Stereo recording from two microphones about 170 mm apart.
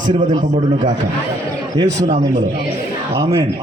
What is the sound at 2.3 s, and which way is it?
Speech, 45° right (ahead or behind).